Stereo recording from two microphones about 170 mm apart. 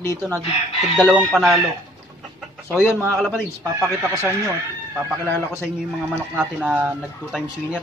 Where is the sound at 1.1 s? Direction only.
5° right (ahead or behind).